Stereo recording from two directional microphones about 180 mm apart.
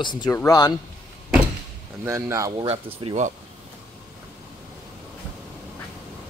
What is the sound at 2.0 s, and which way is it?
Speech, 15° right (ahead or behind).